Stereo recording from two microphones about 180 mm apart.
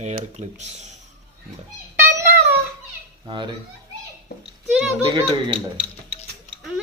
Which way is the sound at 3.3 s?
25° right (ahead or behind).